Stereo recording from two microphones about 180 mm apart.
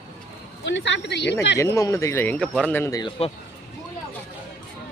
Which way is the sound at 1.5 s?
15° left (ahead or behind).